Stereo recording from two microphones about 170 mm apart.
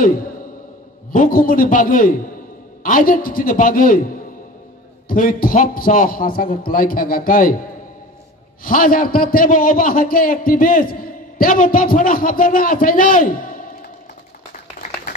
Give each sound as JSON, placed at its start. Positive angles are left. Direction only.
{"t": 1.1, "sound": "a man's voice", "side_deg": 55}
{"t": 8.6, "sound": "a man's voice", "side_deg": 55}
{"t": 14.5, "sound": "a sound", "side_deg": 50}